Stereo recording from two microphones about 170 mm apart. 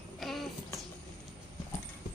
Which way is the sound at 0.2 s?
Centre (ahead or behind).